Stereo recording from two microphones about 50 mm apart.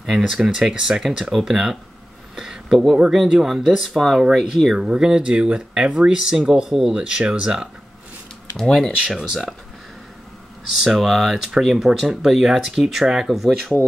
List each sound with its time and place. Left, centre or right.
0.3 s speech: centre
2.3 s a sound: centre
3.4 s speech: centre
4.7 s speech: centre
8.5 s speech: centre
9.2 s speech: centre
10.7 s speech: centre
13.3 s speech: centre